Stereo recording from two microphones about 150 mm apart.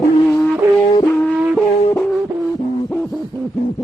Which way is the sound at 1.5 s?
5° left (ahead or behind).